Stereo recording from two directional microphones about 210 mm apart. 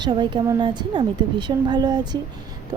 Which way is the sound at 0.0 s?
20° right (ahead or behind).